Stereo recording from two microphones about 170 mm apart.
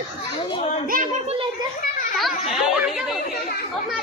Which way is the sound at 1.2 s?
35° right (ahead or behind).